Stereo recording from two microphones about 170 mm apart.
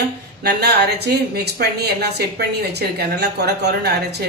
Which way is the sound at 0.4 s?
70° right (ahead or behind).